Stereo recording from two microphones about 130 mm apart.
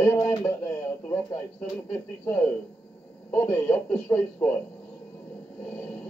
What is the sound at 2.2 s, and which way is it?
A man's voice, 20° left (ahead or behind).